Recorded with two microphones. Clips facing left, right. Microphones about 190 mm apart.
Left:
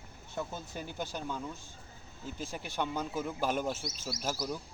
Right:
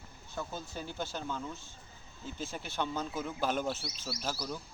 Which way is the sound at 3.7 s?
45° left (ahead or behind).